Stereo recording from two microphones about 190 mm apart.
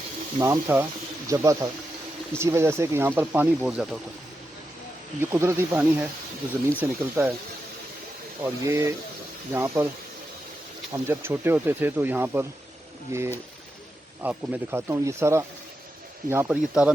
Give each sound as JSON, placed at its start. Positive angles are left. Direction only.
{"t": 0.3, "sound": "speech", "side_deg": -15}
{"t": 5.2, "sound": "speech", "side_deg": -15}
{"t": 8.4, "sound": "speech", "side_deg": -15}
{"t": 10.9, "sound": "speech", "side_deg": -10}